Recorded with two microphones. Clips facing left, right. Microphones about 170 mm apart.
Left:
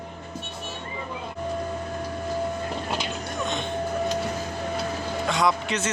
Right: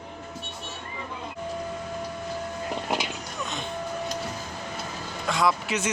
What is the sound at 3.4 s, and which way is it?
Music, centre (ahead or behind).